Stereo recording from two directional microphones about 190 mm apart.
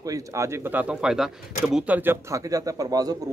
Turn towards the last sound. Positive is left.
turn(degrees=-20)  # may be behind; listen again after turning